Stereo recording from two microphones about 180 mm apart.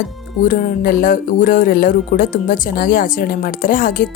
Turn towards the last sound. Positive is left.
turn(degrees=50)  # may be behind; listen again after turning